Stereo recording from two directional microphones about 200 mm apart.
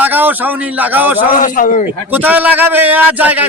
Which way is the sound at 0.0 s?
10° right (ahead or behind).